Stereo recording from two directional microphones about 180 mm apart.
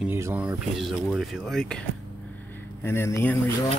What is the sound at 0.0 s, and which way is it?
Speech, 10° right (ahead or behind).